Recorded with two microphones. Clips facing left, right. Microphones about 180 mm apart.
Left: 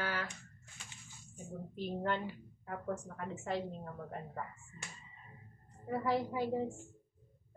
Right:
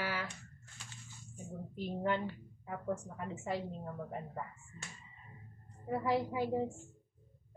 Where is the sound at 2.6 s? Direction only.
10° right (ahead or behind).